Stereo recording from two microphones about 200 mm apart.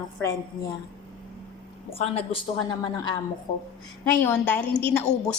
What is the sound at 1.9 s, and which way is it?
A woman's voice, 30° left (ahead or behind).